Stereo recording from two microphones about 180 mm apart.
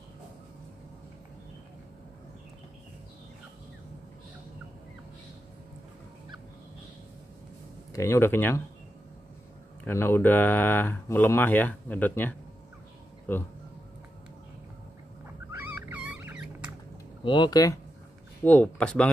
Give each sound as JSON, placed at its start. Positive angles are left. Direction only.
{"t": 7.9, "sound": "speech", "side_deg": 15}
{"t": 9.8, "sound": "speech", "side_deg": 15}
{"t": 15.9, "sound": "dog", "side_deg": -10}
{"t": 17.2, "sound": "speech", "side_deg": 25}
{"t": 18.4, "sound": "speech", "side_deg": 10}